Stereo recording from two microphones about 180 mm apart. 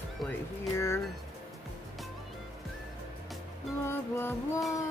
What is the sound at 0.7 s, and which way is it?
Music, 15° left (ahead or behind).